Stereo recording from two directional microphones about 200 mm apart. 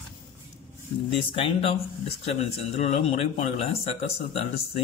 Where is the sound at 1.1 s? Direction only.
25° left (ahead or behind).